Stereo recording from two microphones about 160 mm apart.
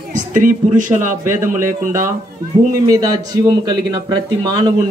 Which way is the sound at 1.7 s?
55° right (ahead or behind).